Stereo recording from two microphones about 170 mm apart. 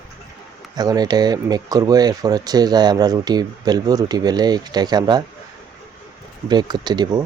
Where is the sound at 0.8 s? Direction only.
25° right (ahead or behind).